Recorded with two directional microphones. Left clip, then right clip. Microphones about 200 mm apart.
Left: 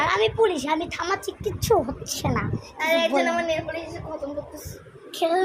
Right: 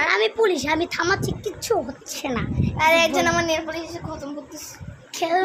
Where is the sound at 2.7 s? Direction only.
60° right (ahead or behind).